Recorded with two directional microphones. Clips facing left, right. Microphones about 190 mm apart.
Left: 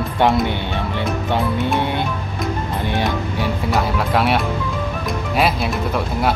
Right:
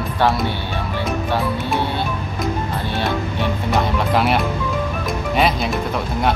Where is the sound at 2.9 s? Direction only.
15° left (ahead or behind).